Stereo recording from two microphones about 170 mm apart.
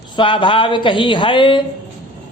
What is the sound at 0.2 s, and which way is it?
A man's voice, 30° left (ahead or behind).